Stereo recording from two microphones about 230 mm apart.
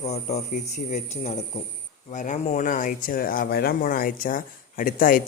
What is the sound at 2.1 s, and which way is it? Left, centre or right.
Speech, left.